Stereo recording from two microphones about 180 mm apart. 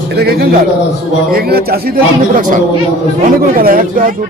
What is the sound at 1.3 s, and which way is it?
Speech, 60° right (ahead or behind).